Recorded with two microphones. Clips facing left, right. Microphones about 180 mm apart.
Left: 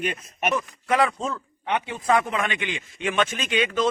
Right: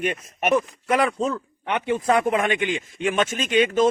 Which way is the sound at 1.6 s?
55° right (ahead or behind).